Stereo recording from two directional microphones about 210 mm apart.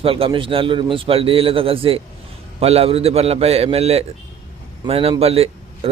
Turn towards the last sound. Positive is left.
turn(degrees=-30)  # may be behind; listen again after turning